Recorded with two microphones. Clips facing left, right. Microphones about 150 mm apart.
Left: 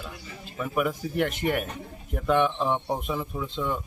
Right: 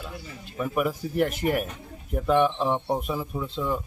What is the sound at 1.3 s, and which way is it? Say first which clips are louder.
Speech: right 1 dB; 35° right (ahead or behind).